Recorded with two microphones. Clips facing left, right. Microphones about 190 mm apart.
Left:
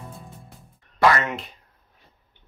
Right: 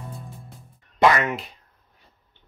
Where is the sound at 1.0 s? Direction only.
20° right (ahead or behind).